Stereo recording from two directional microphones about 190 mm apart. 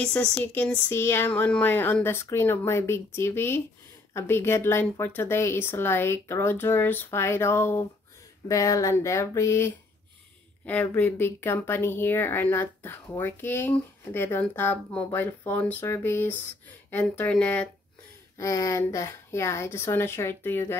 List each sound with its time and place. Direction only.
0.0 s speech: 5° left (ahead or behind)
18.4 s speech: 15° left (ahead or behind)